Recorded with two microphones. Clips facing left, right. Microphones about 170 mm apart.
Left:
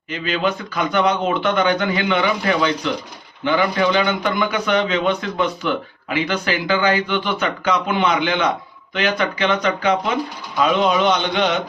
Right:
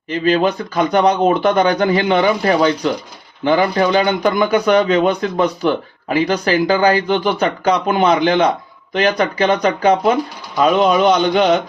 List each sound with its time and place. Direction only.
0.1 s a man's voice: 40° right (ahead or behind)